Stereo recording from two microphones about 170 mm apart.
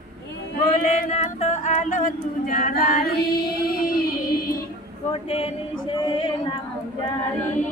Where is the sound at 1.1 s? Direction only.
40° left (ahead or behind); by 3.9 s 65° left (ahead or behind).